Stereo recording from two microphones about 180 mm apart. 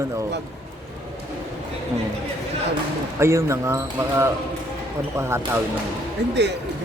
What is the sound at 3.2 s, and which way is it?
Speech, 15° right (ahead or behind).